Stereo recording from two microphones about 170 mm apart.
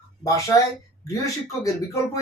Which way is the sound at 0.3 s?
20° left (ahead or behind).